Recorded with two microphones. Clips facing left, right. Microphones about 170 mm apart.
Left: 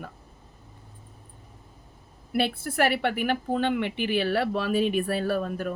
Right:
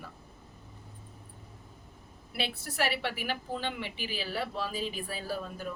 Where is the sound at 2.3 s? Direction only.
55° left (ahead or behind).